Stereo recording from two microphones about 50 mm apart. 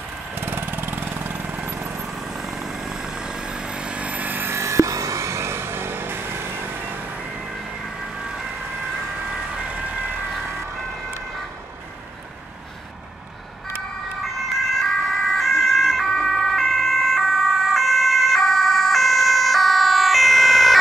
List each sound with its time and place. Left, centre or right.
0.4 s vehicle: right
1.6 s vehicle: right
2.1 s vehicle: centre; by 4.5 s right
4.5 s a sound: right
9.3 s emergency vehicle: right
14.8 s ambulance: centre